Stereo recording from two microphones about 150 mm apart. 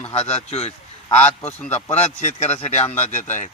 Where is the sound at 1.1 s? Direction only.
10° left (ahead or behind).